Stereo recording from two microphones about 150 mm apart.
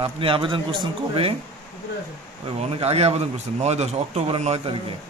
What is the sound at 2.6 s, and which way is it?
Speech, 45° right (ahead or behind).